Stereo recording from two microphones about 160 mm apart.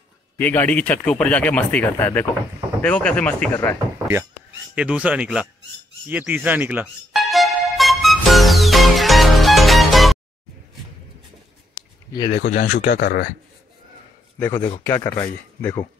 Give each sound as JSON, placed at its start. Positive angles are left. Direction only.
{"t": 0.4, "sound": "speech", "side_deg": 10}
{"t": 4.7, "sound": "speech", "side_deg": -5}
{"t": 7.1, "sound": "music", "side_deg": 0}
{"t": 12.1, "sound": "speech", "side_deg": 25}
{"t": 12.4, "sound": "speech", "side_deg": 50}
{"t": 12.6, "sound": "speech", "side_deg": 70}
{"t": 14.4, "sound": "speech", "side_deg": 15}